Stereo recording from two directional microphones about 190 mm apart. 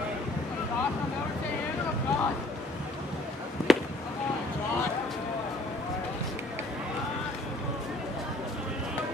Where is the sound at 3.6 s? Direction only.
Centre (ahead or behind).